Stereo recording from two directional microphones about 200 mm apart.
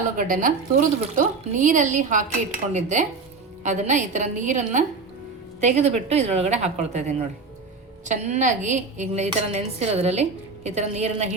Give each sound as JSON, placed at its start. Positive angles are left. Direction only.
{"t": 0.2, "sound": "a woman's voice", "side_deg": -40}